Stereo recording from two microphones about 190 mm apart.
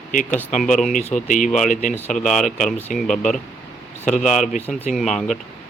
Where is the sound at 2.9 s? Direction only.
40° left (ahead or behind).